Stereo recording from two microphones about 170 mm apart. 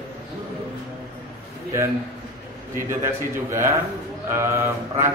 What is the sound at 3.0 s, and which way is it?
A man's voice, 15° right (ahead or behind).